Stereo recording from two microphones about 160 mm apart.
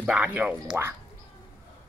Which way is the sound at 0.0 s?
10° right (ahead or behind).